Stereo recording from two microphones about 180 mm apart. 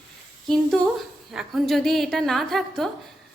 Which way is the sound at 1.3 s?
Centre (ahead or behind).